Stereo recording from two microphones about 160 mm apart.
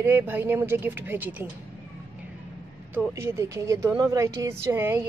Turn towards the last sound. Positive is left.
turn(degrees=-15)  # may be behind; listen again after turning